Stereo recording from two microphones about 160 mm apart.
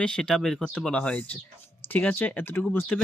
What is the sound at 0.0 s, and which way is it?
Speech, 5° left (ahead or behind).